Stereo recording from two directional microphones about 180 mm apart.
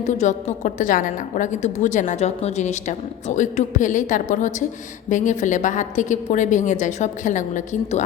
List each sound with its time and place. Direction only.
0.0 s a woman's voice: 40° left (ahead or behind)